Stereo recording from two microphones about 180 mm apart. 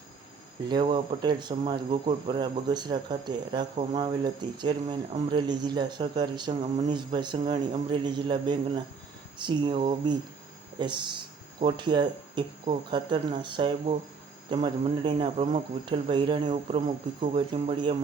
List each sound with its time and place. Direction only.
0.7 s speech: 25° right (ahead or behind)